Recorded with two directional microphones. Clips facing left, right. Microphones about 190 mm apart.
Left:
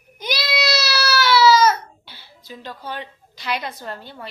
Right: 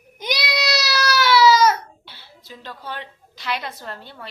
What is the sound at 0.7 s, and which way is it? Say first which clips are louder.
Baby cry: right 2 dB; 15° right (ahead or behind).